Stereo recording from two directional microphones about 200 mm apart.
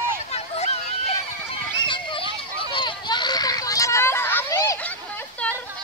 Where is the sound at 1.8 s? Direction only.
25° left (ahead or behind); by 5.6 s 10° left (ahead or behind).